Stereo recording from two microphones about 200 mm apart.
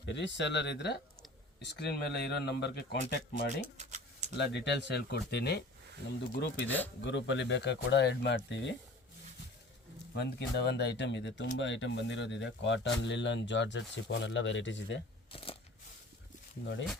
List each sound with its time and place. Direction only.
0.0 s speech: 60° left (ahead or behind)
3.8 s a sound: 35° right (ahead or behind)
4.4 s speech: 60° left (ahead or behind)
6.7 s speech: 10° left (ahead or behind)
7.0 s speech: 65° left (ahead or behind)
10.2 s speech: 55° left (ahead or behind)
15.3 s a sound: 25° left (ahead or behind)